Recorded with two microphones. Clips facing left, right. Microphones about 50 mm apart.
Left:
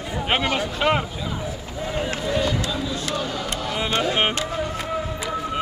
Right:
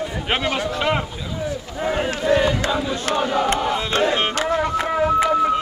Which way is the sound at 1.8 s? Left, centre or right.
Right.